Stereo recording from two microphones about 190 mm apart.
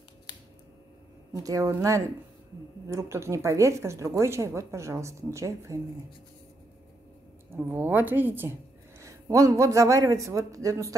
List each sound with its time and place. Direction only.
1.4 s speech: 20° right (ahead or behind)
7.5 s speech: 10° right (ahead or behind)